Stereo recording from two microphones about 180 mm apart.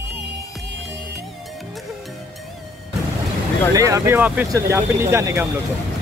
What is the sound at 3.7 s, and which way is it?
Speech, 20° right (ahead or behind).